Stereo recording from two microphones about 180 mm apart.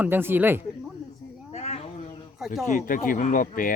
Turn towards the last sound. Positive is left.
turn(degrees=45)  # may be behind; listen again after turning